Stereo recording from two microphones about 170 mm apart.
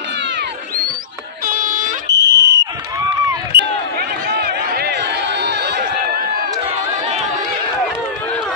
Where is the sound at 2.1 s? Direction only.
90° right.